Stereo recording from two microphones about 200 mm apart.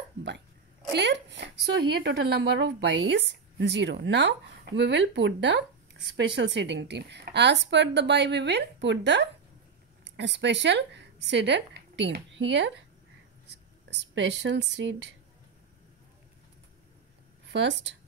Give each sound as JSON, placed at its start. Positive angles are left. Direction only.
{"t": 0.9, "sound": "a woman's voice", "side_deg": -60}
{"t": 13.8, "sound": "a woman's voice", "side_deg": -60}
{"t": 17.5, "sound": "a woman's voice", "side_deg": -60}